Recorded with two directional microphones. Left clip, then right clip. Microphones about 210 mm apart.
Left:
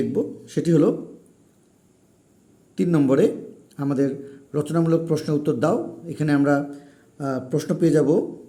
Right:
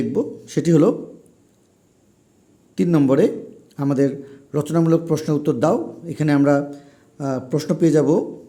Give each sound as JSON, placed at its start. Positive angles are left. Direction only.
{"t": 0.1, "sound": "speech", "side_deg": -15}
{"t": 2.7, "sound": "a man's voice", "side_deg": -15}